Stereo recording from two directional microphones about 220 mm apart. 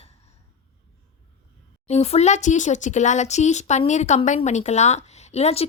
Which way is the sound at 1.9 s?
30° left (ahead or behind).